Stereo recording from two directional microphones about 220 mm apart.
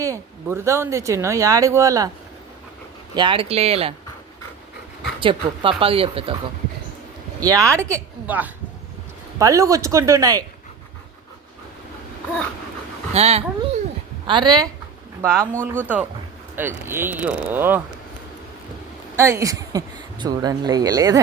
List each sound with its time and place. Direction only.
0.0 s speech: 15° right (ahead or behind)
3.2 s speech: 25° right (ahead or behind)
5.2 s speech: 25° right (ahead or behind)
7.3 s speech: 15° right (ahead or behind)
13.1 s speech: 30° right (ahead or behind); by 17.8 s 10° right (ahead or behind)
19.1 s speech: 10° right (ahead or behind)